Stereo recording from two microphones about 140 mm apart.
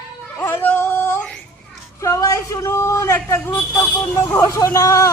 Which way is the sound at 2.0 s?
25° left (ahead or behind).